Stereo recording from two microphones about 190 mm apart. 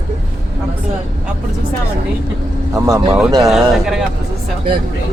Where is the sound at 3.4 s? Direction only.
Centre (ahead or behind).